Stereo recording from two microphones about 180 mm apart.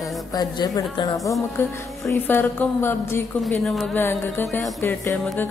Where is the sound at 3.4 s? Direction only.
Centre (ahead or behind).